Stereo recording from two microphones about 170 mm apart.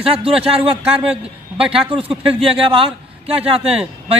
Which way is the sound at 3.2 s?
35° right (ahead or behind).